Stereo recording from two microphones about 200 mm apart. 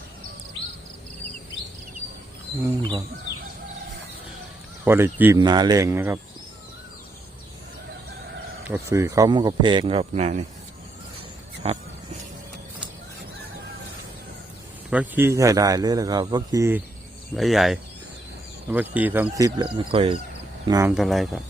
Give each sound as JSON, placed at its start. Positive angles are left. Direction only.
{"t": 4.9, "sound": "speech", "side_deg": -10}
{"t": 5.4, "sound": "speech", "side_deg": -20}
{"t": 8.6, "sound": "speech", "side_deg": -10}
{"t": 11.6, "sound": "speech", "side_deg": -30}
{"t": 14.8, "sound": "speech", "side_deg": -10}
{"t": 17.3, "sound": "speech", "side_deg": 0}
{"t": 20.7, "sound": "speech", "side_deg": -15}
{"t": 20.9, "sound": "speech", "side_deg": 0}